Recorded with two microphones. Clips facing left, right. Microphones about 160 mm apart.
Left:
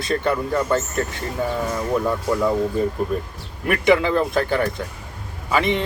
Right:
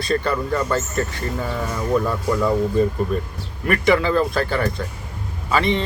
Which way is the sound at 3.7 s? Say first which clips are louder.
Even; 20° left (ahead or behind).